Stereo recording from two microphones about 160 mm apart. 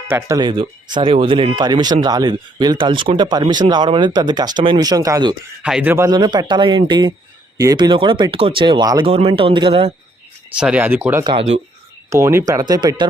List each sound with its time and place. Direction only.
0.1 s speech: 20° right (ahead or behind)
5.6 s speech: 5° right (ahead or behind)
6.1 s speech: 25° right (ahead or behind)
10.6 s speech: 10° right (ahead or behind)
11.2 s speech: 30° right (ahead or behind)
12.1 s speech: 15° right (ahead or behind)